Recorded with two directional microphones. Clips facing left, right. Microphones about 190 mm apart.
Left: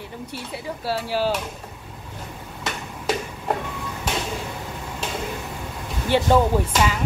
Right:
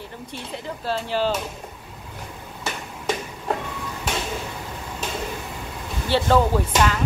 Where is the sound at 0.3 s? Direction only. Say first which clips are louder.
Even; 10° left (ahead or behind).